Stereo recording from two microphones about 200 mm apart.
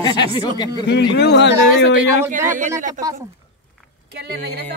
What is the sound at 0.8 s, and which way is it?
Speech, 55° left (ahead or behind).